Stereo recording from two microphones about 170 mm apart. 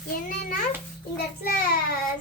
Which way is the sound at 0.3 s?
50° left (ahead or behind).